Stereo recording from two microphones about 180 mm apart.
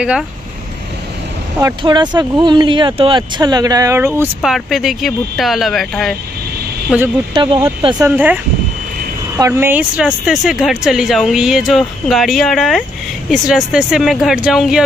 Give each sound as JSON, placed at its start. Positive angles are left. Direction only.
{"t": 1.8, "sound": "speech", "side_deg": -25}
{"t": 4.4, "sound": "speech", "side_deg": 0}
{"t": 7.3, "sound": "speech", "side_deg": -25}
{"t": 8.0, "sound": "speech", "side_deg": -10}
{"t": 9.4, "sound": "speech", "side_deg": -15}